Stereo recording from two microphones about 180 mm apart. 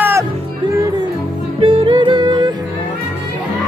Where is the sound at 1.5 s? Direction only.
30° right (ahead or behind).